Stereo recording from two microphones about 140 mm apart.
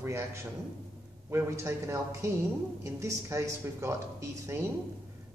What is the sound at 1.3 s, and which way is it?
Speech, 20° right (ahead or behind).